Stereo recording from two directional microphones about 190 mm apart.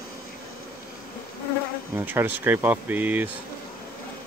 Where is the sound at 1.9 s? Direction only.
10° right (ahead or behind).